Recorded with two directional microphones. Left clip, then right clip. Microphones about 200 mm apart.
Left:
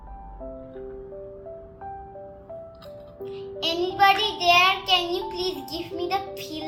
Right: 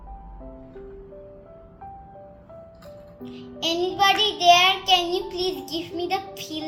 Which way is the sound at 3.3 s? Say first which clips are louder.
Right 1 dB; 65° right (ahead or behind).